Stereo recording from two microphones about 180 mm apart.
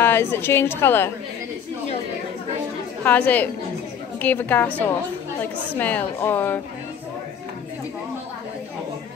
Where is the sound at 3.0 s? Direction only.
10° left (ahead or behind).